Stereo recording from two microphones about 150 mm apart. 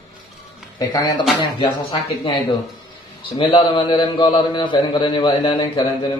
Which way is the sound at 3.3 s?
35° left (ahead or behind).